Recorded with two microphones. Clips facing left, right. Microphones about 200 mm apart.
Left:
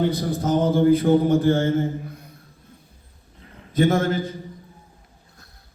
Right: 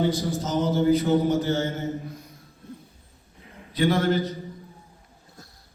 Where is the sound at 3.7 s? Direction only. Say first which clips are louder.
Left 2 dB; 45° left (ahead or behind).